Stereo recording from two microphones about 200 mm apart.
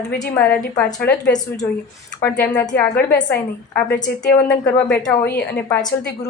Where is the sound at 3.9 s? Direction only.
40° left (ahead or behind).